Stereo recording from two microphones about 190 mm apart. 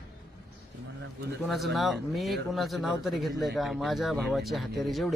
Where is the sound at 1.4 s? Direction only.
Centre (ahead or behind).